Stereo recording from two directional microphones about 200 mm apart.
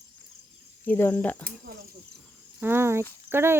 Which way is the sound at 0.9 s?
10° left (ahead or behind).